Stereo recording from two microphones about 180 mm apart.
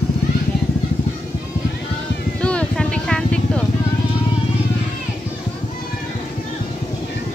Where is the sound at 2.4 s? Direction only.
5° left (ahead or behind).